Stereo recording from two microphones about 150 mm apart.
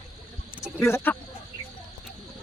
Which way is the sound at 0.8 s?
15° left (ahead or behind).